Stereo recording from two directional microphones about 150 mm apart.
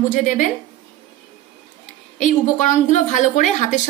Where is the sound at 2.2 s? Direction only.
55° left (ahead or behind).